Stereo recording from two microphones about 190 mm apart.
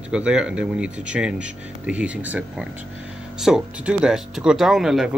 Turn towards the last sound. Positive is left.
turn(degrees=-5)  # may be behind; listen again after turning